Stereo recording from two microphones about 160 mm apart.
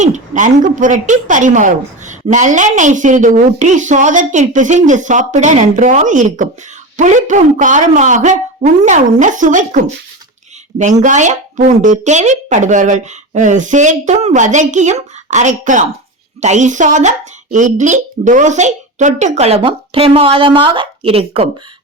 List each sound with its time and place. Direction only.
0.0 s a woman's voice: 50° right (ahead or behind)